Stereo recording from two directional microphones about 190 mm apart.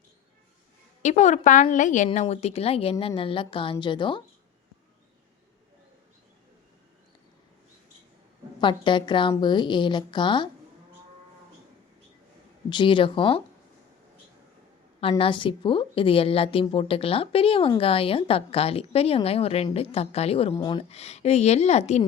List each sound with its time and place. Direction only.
1.0 s a woman's voice: 35° left (ahead or behind)
8.6 s a woman's voice: 25° left (ahead or behind)
12.7 s a woman's voice: 25° left (ahead or behind)
15.2 s a woman's voice: 25° left (ahead or behind)